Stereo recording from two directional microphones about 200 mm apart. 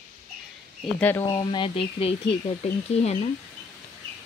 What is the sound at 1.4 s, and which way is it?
Speech, 25° left (ahead or behind).